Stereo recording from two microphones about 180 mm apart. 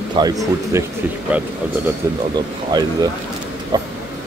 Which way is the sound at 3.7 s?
25° right (ahead or behind).